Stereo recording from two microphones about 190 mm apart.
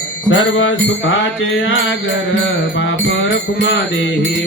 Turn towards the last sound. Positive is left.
turn(degrees=85)